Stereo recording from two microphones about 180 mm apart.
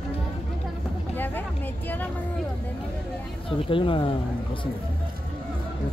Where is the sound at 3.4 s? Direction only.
30° left (ahead or behind).